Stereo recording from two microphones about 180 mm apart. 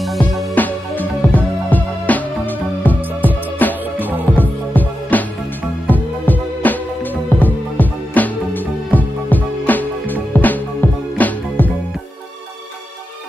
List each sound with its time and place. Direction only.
0.0 s music: centre (ahead or behind)